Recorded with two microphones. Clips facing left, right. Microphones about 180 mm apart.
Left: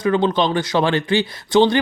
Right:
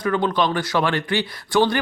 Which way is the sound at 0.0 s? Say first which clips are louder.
Left 3 dB; 25° left (ahead or behind).